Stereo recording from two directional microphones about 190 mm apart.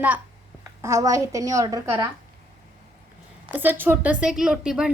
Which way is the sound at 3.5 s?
10° right (ahead or behind).